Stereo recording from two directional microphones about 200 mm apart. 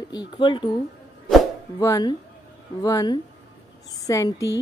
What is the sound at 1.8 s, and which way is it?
A woman's voice, 15° left (ahead or behind).